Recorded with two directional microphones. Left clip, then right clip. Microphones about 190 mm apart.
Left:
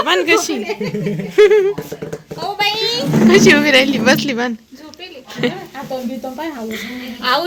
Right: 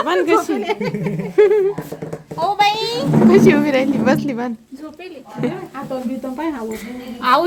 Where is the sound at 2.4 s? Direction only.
35° right (ahead or behind).